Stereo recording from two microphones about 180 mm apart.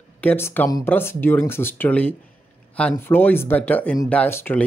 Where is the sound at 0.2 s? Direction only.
10° left (ahead or behind).